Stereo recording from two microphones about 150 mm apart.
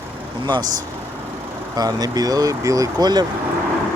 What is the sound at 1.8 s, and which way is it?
Speech, 25° right (ahead or behind).